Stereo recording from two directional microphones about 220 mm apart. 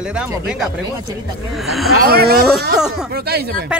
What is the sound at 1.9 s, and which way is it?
Speech, 45° right (ahead or behind).